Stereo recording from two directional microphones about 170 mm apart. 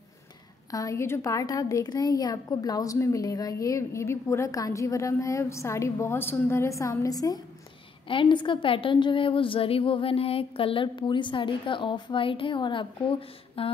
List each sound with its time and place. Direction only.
0.7 s a woman's voice: 20° left (ahead or behind)